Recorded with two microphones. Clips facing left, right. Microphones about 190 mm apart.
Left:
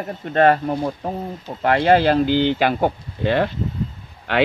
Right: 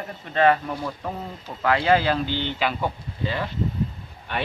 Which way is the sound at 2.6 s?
55° left (ahead or behind).